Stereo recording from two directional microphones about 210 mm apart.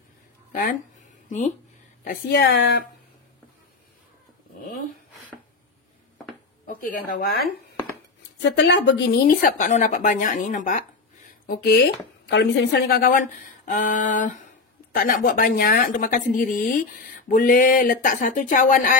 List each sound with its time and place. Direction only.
0.5 s a sound: 40° left (ahead or behind)
2.0 s a woman's voice: 55° left (ahead or behind)
6.6 s speech: 40° left (ahead or behind)
8.4 s speech: 55° left (ahead or behind); by 18.9 s 40° left (ahead or behind)